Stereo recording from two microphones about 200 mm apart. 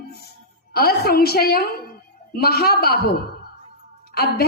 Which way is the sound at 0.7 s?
50° left (ahead or behind).